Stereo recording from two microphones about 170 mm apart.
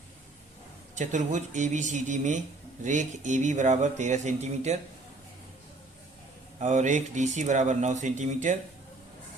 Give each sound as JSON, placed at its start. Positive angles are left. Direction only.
{"t": 0.9, "sound": "speech", "side_deg": -45}
{"t": 6.6, "sound": "speech", "side_deg": -45}